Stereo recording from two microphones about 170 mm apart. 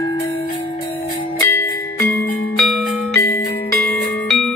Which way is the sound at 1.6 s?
15° left (ahead or behind).